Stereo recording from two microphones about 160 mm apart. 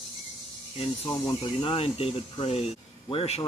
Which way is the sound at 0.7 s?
35° left (ahead or behind).